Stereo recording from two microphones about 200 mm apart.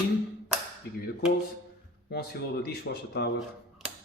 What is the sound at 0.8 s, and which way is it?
Speech, 55° left (ahead or behind).